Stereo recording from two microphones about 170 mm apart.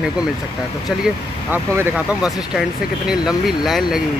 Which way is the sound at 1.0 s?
10° right (ahead or behind).